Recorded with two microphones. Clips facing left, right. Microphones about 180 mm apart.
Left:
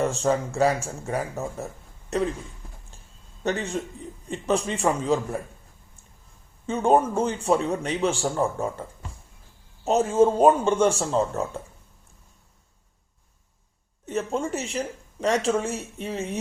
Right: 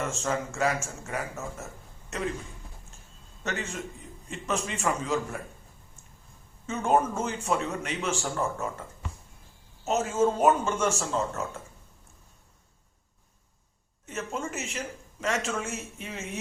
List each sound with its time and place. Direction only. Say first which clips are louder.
0.0 s a woman's voice: left 7 dB; 35° left (ahead or behind)
3.4 s a woman's voice: left 7 dB; 35° left (ahead or behind)
6.7 s a woman's voice: left 5 dB; 30° left (ahead or behind)
14.1 s a woman's voice: left 7 dB; 35° left (ahead or behind)